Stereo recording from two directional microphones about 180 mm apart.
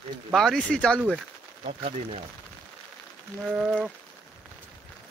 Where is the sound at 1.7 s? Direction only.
40° right (ahead or behind).